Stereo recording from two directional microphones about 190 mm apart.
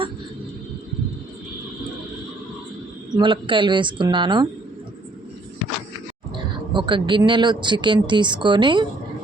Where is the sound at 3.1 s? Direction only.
25° right (ahead or behind).